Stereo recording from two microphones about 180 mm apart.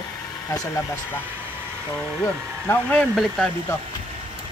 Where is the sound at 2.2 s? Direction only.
10° left (ahead or behind).